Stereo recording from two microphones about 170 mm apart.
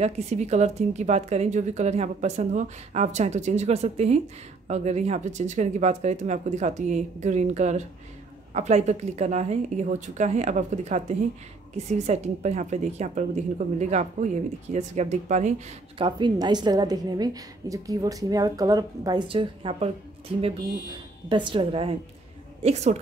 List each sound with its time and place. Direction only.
0.0 s a woman's voice: 40° right (ahead or behind)
16.0 s a woman's voice: 30° right (ahead or behind)
21.3 s a woman's voice: 30° right (ahead or behind)